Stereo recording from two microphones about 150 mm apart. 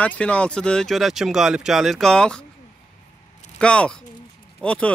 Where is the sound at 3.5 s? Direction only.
5° left (ahead or behind).